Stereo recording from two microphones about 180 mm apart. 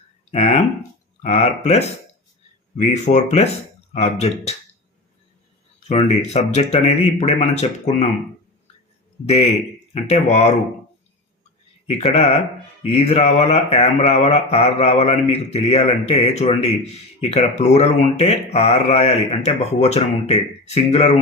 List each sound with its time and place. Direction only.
0.3 s speech: 35° left (ahead or behind)
5.9 s speech: 35° left (ahead or behind)
9.2 s speech: 35° left (ahead or behind)
11.9 s speech: 35° left (ahead or behind)